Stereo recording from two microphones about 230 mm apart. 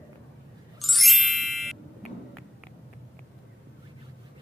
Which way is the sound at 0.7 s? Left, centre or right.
Centre.